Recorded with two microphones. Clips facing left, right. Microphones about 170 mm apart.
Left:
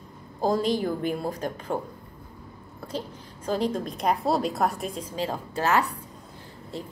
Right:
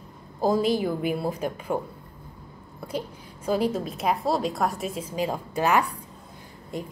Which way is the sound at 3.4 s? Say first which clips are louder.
Right 2 dB; 10° right (ahead or behind).